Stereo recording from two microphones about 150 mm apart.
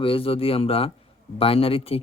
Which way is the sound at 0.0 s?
40° left (ahead or behind).